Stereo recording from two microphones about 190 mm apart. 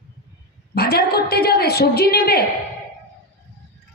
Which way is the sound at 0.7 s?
55° left (ahead or behind).